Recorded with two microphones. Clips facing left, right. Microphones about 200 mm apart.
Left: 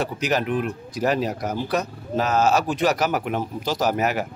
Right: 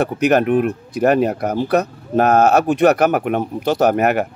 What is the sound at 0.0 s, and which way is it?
Speech, 60° right (ahead or behind).